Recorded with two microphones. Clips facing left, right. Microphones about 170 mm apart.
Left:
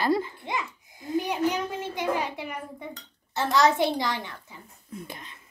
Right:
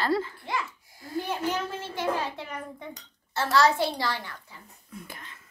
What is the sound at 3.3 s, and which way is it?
A child's voice, 20° left (ahead or behind).